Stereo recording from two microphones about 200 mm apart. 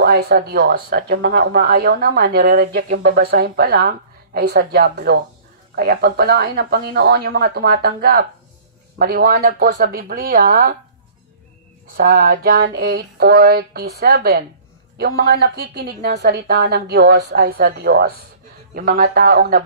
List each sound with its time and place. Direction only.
0.0 s a woman's voice: 50° right (ahead or behind)
12.0 s a woman's voice: 45° right (ahead or behind)